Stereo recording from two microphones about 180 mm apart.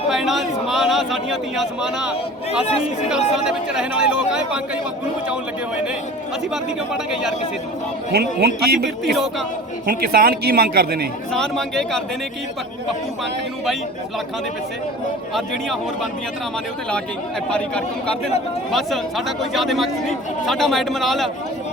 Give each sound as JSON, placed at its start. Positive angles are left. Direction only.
{"t": 0.1, "sound": "a man's voice", "side_deg": 0}
{"t": 6.5, "sound": "speech", "side_deg": -5}
{"t": 8.1, "sound": "a man's voice", "side_deg": -65}
{"t": 11.3, "sound": "speech", "side_deg": 0}
{"t": 18.7, "sound": "speech", "side_deg": 0}